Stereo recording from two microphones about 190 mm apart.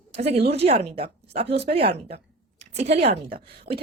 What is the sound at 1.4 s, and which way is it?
Speech, 60° right (ahead or behind).